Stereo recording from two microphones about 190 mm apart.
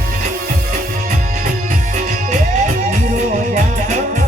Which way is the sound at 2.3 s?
45° right (ahead or behind).